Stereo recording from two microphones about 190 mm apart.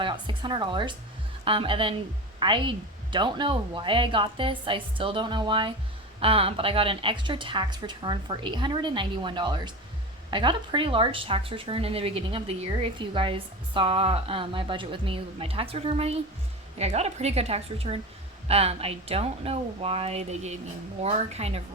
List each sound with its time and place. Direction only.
0.0 s a woman's voice: 25° right (ahead or behind)